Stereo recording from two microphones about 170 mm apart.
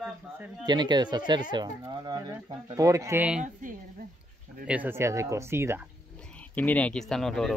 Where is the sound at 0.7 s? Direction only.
25° right (ahead or behind); by 3.4 s 10° right (ahead or behind).